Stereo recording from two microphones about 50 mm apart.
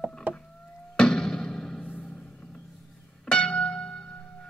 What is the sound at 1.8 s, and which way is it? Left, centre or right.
Music, left.